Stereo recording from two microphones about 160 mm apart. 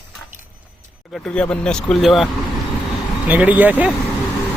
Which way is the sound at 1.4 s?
5° left (ahead or behind).